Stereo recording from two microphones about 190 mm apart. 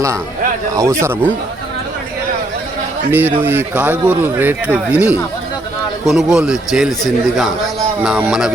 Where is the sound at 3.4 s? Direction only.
10° right (ahead or behind).